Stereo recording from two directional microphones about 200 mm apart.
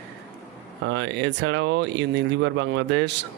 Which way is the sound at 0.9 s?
60° right (ahead or behind).